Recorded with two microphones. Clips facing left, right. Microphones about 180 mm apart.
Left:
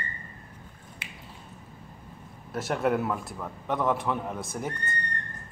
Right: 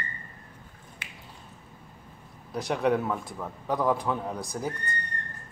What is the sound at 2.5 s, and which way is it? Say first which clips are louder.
Speech: right 1 dB; 5° left (ahead or behind).